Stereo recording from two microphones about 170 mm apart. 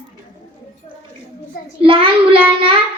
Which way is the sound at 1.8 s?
30° right (ahead or behind).